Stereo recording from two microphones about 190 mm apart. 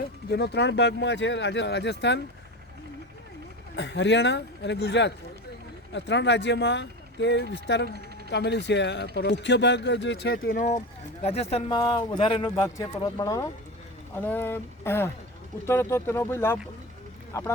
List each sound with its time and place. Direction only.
0.3 s speech: 60° left (ahead or behind)
3.8 s speech: 70° left (ahead or behind); by 10.8 s 50° left (ahead or behind)
11.2 s speech: 35° left (ahead or behind); by 17.5 s 15° left (ahead or behind)